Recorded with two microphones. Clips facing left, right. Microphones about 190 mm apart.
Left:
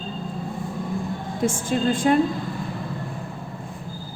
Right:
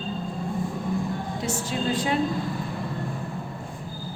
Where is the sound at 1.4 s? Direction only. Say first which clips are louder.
Left 8 dB; 50° left (ahead or behind).